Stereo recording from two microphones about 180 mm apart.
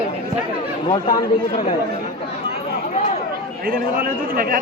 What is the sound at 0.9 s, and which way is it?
Speech, 25° left (ahead or behind).